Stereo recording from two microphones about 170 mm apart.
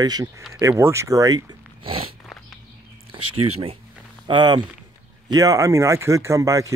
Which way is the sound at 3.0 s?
35° right (ahead or behind).